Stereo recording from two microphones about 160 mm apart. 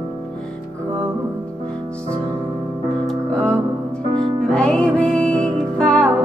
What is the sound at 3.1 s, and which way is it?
Music, 10° left (ahead or behind).